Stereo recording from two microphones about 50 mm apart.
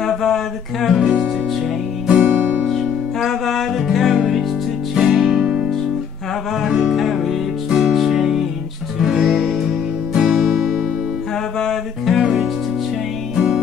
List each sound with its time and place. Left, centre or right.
0.0 s a sound: centre
0.8 s music: centre
2.7 s music: centre
6.6 s music: centre
10.1 s music: right
11.6 s music: centre